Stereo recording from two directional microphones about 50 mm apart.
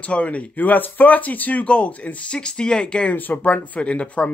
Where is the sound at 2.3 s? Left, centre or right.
Centre.